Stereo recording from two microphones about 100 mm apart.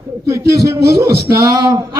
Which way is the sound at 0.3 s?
30° right (ahead or behind).